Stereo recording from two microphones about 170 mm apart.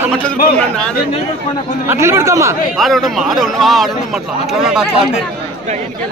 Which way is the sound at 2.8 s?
Centre (ahead or behind).